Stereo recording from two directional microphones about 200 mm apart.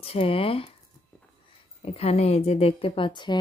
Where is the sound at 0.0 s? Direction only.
30° left (ahead or behind).